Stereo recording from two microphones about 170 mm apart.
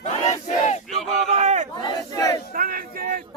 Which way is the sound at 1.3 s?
40° right (ahead or behind).